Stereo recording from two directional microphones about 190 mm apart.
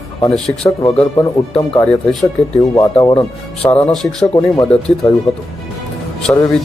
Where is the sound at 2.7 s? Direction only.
20° left (ahead or behind).